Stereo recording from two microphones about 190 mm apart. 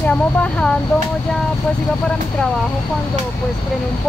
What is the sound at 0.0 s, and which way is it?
Speech, 5° left (ahead or behind).